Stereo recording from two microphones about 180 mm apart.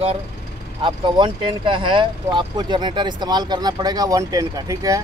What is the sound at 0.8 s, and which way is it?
Speech, 25° right (ahead or behind).